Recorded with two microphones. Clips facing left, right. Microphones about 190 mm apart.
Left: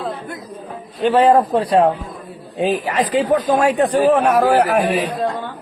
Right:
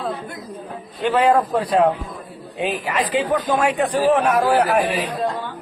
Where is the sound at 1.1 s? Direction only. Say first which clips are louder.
Left 4 dB; 40° left (ahead or behind).